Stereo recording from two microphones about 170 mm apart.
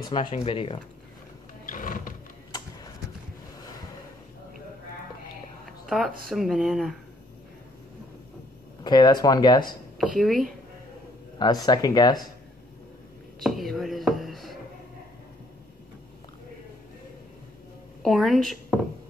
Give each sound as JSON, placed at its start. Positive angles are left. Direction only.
{"t": 0.0, "sound": "speech", "side_deg": 25}
{"t": 1.7, "sound": "music", "side_deg": 50}
{"t": 5.9, "sound": "speech", "side_deg": 0}
{"t": 8.8, "sound": "speech", "side_deg": 25}
{"t": 9.9, "sound": "speech", "side_deg": 0}
{"t": 11.3, "sound": "speech", "side_deg": 25}
{"t": 13.4, "sound": "whispering", "side_deg": 0}
{"t": 18.0, "sound": "a woman's voice", "side_deg": 0}